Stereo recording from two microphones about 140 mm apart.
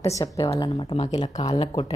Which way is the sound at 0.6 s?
35° left (ahead or behind).